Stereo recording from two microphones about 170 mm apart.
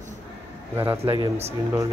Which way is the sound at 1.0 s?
35° right (ahead or behind).